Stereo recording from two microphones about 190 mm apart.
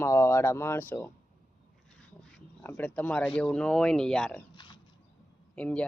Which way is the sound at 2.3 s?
10° left (ahead or behind).